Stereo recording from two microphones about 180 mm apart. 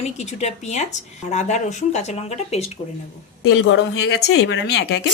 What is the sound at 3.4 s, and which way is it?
Speech, 90° left.